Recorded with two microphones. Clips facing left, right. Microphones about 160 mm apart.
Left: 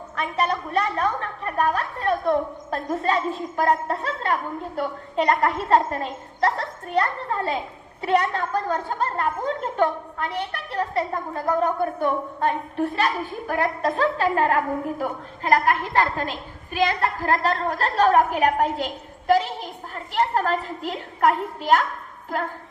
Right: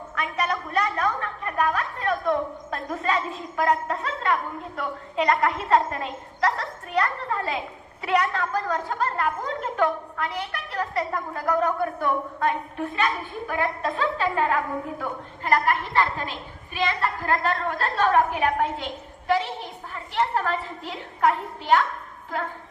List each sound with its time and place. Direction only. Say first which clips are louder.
0.2 s a woman's voice: left 3 dB; 30° left (ahead or behind)
19.9 s a woman's voice: left 2 dB; 40° left (ahead or behind)